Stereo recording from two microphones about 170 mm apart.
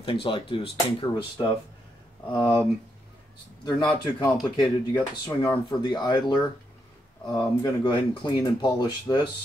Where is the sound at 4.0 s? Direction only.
20° left (ahead or behind).